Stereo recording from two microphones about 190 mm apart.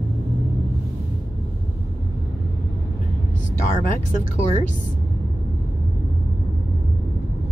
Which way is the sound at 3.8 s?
40° left (ahead or behind).